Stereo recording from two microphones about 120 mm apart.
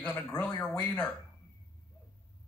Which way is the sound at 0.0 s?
15° left (ahead or behind).